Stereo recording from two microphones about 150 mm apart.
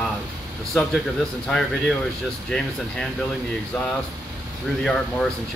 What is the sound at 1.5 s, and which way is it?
Speech, 5° left (ahead or behind).